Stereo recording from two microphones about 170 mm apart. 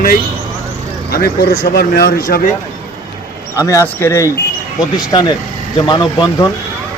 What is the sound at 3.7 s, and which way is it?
Speech, 15° left (ahead or behind).